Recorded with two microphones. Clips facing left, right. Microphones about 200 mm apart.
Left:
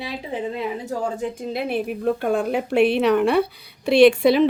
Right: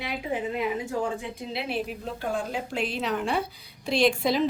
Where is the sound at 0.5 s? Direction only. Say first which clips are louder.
Left 1 dB; 35° left (ahead or behind).